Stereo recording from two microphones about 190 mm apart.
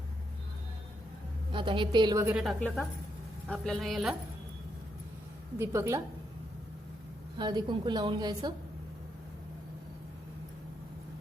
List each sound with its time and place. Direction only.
1.5 s a woman's voice: 25° right (ahead or behind)
2.3 s a woman's voice: centre (ahead or behind)
5.5 s a woman's voice: 15° right (ahead or behind)
7.3 s a woman's voice: 25° right (ahead or behind)